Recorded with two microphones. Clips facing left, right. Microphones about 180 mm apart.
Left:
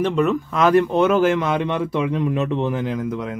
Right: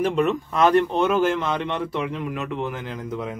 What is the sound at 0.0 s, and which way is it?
Speech, 5° right (ahead or behind).